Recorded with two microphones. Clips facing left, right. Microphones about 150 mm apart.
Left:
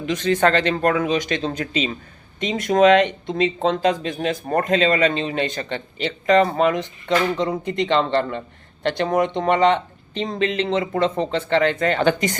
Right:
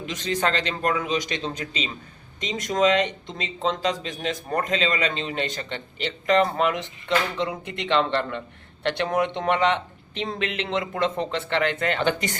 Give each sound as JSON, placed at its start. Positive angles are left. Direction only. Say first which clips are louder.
{"t": 0.2, "sound": "a man's voice", "louder": "left 6 dB", "side_deg": 55}